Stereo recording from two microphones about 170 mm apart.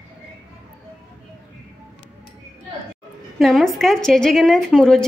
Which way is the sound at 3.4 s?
Centre (ahead or behind).